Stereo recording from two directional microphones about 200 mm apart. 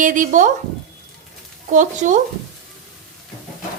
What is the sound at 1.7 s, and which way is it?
Speech, 40° right (ahead or behind).